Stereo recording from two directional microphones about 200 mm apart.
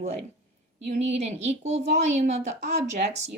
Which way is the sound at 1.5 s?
35° right (ahead or behind).